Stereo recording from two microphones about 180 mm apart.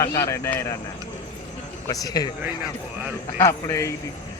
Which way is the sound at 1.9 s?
20° left (ahead or behind).